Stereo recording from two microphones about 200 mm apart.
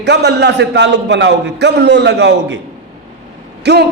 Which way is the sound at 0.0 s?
60° right (ahead or behind).